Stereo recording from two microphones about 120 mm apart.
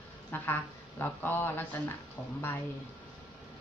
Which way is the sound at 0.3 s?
15° left (ahead or behind).